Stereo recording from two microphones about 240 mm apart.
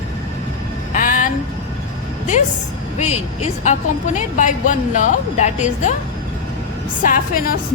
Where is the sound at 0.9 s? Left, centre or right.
Left.